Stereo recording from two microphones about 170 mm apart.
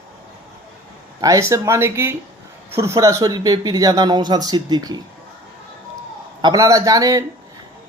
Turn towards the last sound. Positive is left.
turn(degrees=-20)  # may be behind; listen again after turning